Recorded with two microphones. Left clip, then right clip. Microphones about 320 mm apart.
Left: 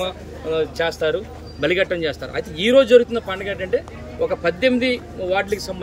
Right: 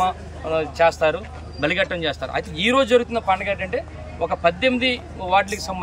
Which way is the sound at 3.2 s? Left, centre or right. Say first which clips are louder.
Right 4 dB; right.